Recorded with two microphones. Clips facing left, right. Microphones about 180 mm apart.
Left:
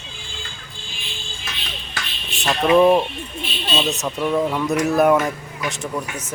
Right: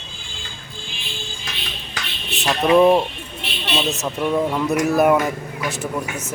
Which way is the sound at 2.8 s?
5° right (ahead or behind).